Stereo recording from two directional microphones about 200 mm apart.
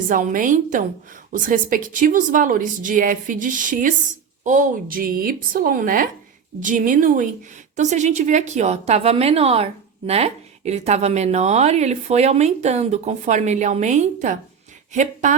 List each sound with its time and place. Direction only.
0.1 s speech: 40° right (ahead or behind)